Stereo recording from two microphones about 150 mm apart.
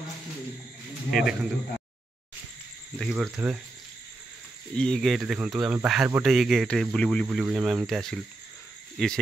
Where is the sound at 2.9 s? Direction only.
Centre (ahead or behind).